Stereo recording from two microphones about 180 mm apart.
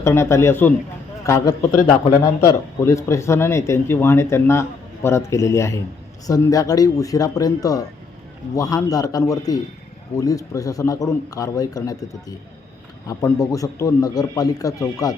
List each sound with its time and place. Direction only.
0.0 s a man's voice: 15° left (ahead or behind)
13.1 s a man's voice: 20° left (ahead or behind)